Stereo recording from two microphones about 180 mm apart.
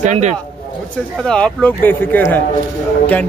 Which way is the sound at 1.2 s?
5° left (ahead or behind).